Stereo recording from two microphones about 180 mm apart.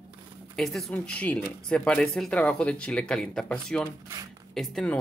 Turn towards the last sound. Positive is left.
turn(degrees=0)  # may be behind; listen again after turning